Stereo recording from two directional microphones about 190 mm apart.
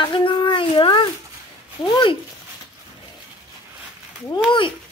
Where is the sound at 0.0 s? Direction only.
25° left (ahead or behind).